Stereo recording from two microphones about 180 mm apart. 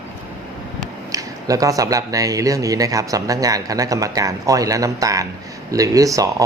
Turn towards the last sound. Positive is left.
turn(degrees=-20)  # may be behind; listen again after turning